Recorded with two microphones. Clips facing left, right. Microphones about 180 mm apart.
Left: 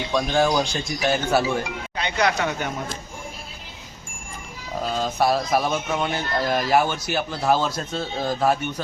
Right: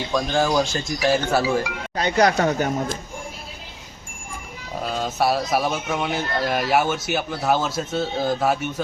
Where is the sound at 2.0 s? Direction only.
40° right (ahead or behind).